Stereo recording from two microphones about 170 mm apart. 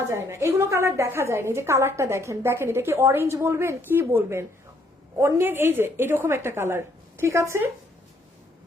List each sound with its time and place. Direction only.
0.0 s a woman's voice: 15° right (ahead or behind)